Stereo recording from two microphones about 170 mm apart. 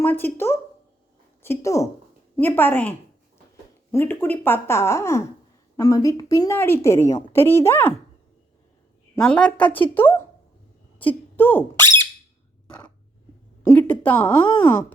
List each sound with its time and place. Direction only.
0.0 s a woman's voice: 10° left (ahead or behind)
3.9 s speech: 10° left (ahead or behind)
9.2 s speech: 5° left (ahead or behind)
11.3 s speech: 10° left (ahead or behind)
13.6 s a woman's voice: 10° left (ahead or behind)
14.3 s speech: 30° left (ahead or behind)